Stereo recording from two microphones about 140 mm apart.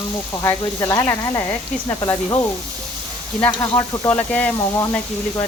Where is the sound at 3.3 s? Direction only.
Centre (ahead or behind).